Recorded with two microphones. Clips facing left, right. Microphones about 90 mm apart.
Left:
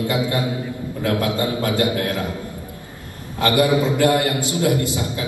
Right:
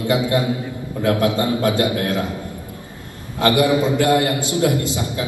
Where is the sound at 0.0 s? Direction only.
20° right (ahead or behind).